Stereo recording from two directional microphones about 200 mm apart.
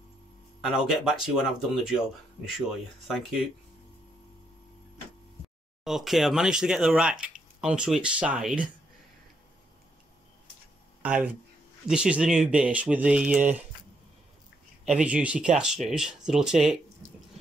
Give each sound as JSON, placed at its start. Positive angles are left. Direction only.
{"t": 0.6, "sound": "speech", "side_deg": 0}
{"t": 3.1, "sound": "speech", "side_deg": 0}
{"t": 5.9, "sound": "speech", "side_deg": 0}
{"t": 11.0, "sound": "speech", "side_deg": -5}
{"t": 14.9, "sound": "speech", "side_deg": -5}